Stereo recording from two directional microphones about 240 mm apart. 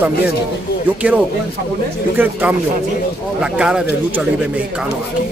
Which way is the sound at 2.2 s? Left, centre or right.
Centre.